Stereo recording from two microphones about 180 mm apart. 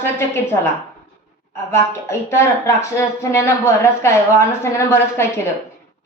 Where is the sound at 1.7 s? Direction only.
15° left (ahead or behind).